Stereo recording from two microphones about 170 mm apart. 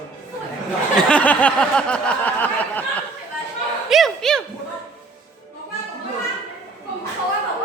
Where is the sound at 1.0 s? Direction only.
5° left (ahead or behind).